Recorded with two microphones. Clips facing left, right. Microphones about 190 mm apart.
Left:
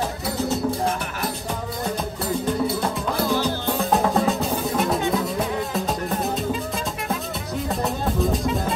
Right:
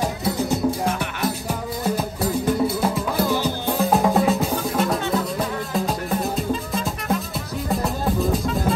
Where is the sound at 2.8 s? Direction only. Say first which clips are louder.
Right 2 dB; centre (ahead or behind).